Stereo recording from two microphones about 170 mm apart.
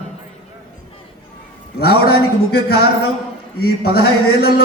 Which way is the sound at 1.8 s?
65° left (ahead or behind).